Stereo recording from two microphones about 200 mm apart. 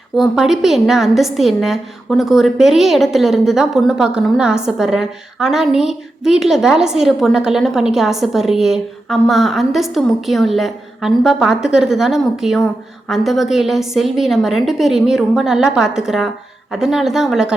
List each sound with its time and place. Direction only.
0.2 s a woman's voice: centre (ahead or behind)